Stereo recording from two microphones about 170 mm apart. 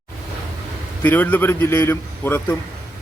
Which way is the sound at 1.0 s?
10° left (ahead or behind).